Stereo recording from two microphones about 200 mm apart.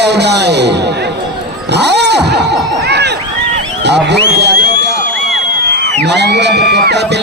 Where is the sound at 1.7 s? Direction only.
60° right (ahead or behind).